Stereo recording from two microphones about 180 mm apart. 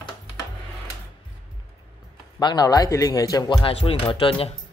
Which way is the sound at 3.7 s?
30° left (ahead or behind).